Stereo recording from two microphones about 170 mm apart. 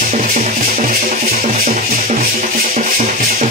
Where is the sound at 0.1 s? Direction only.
45° right (ahead or behind).